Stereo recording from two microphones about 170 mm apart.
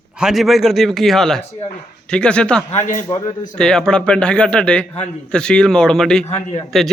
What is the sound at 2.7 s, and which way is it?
Speech, 45° left (ahead or behind).